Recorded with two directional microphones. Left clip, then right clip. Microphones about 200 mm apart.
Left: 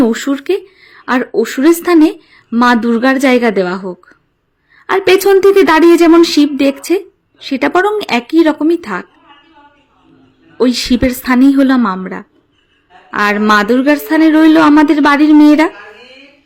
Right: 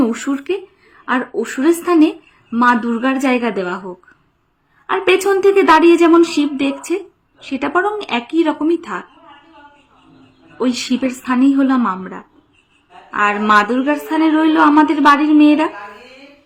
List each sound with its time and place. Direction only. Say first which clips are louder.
0.1 s a woman's voice: left 6 dB; 30° left (ahead or behind)
4.9 s a sound: left 5 dB; 30° left (ahead or behind)
7.5 s a woman's voice: left 5 dB; 30° left (ahead or behind)
10.6 s a woman's voice: left 6 dB; 25° left (ahead or behind)